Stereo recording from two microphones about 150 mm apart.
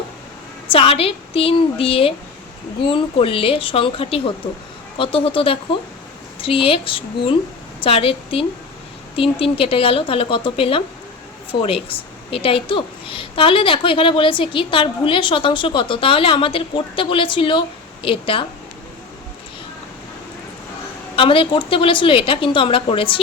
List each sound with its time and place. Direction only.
0.7 s a woman's voice: 40° left (ahead or behind)
21.2 s a woman's voice: 35° left (ahead or behind)